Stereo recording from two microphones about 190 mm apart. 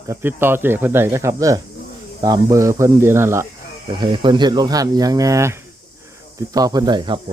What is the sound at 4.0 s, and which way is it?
Speech, 25° right (ahead or behind).